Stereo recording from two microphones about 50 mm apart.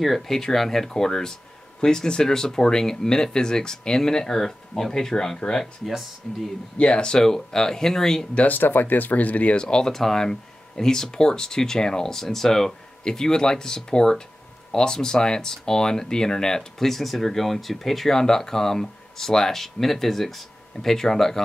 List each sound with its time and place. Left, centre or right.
0.0 s speech: centre; by 7.2 s left
7.2 s speech: centre
8.5 s speech: left; by 21.4 s centre